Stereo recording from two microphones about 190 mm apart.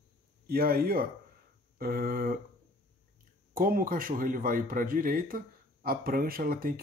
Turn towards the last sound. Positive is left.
turn(degrees=-50)  # may be behind; listen again after turning